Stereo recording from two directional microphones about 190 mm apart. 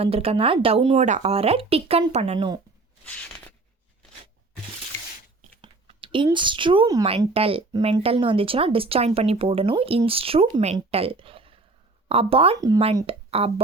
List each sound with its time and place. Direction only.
0.0 s speech: 30° right (ahead or behind)
5.6 s a sound: 25° right (ahead or behind)
6.2 s speech: 25° right (ahead or behind)